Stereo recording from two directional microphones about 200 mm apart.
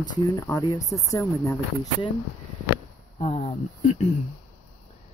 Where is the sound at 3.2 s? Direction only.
30° left (ahead or behind).